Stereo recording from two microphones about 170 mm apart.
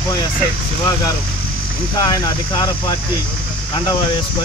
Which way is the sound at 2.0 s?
25° left (ahead or behind).